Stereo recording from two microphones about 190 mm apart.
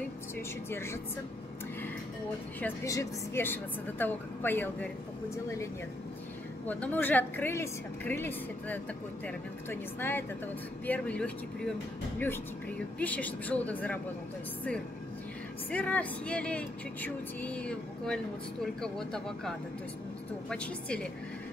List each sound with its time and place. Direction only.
0.7 s a woman's voice: 15° left (ahead or behind)
2.6 s a woman's voice: 15° left (ahead or behind)
13.0 s a woman's voice: 10° left (ahead or behind)
15.7 s a woman's voice: 5° left (ahead or behind)